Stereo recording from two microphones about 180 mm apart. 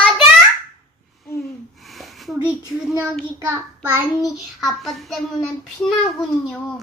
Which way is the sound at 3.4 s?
15° right (ahead or behind).